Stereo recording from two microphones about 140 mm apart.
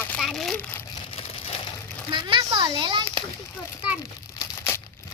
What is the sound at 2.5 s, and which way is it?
Speech, 35° right (ahead or behind).